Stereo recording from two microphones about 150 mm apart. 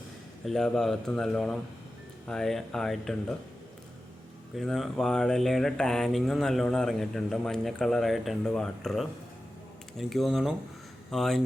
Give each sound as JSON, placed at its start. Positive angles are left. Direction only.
{"t": 0.4, "sound": "mantra", "side_deg": 5}
{"t": 4.5, "sound": "mantra", "side_deg": 0}